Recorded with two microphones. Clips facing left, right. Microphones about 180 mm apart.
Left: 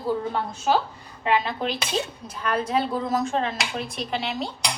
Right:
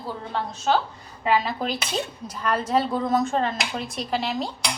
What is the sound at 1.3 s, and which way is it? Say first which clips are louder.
A woman's voice: right 1 dB; 5° right (ahead or behind).